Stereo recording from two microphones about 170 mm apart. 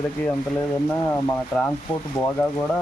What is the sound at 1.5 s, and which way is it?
Speech, 5° left (ahead or behind).